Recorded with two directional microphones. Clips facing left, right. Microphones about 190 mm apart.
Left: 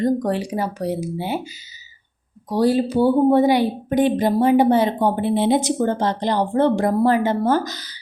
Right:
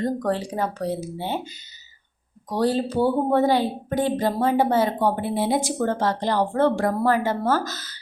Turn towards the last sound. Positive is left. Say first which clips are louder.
# left 4 dB
turn(degrees=15)  # may be behind; listen again after turning